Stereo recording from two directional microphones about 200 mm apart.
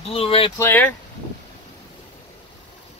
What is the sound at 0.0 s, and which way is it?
Speech, 30° left (ahead or behind).